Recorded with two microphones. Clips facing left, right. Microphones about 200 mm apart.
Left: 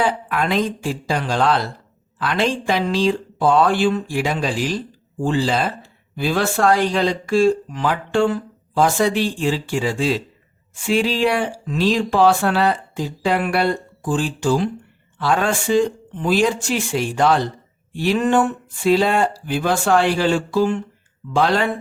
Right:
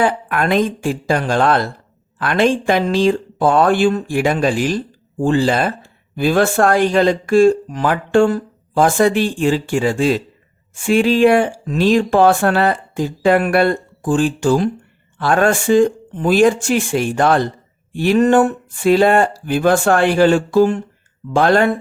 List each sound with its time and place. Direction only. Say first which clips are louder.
0.0 s speech: right 3 dB; 55° right (ahead or behind)